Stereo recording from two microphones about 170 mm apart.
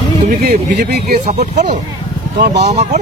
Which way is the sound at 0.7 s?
70° right (ahead or behind).